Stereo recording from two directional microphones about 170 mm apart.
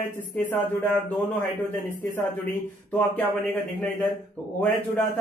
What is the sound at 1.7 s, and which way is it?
Speech, 15° left (ahead or behind).